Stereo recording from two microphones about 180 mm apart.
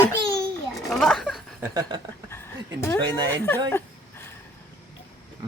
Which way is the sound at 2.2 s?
15° left (ahead or behind).